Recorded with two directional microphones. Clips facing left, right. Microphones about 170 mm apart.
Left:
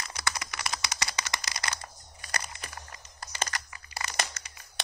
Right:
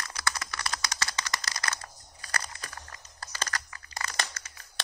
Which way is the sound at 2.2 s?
15° left (ahead or behind).